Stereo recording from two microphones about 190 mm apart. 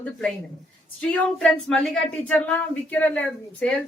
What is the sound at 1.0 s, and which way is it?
Speech, 5° left (ahead or behind).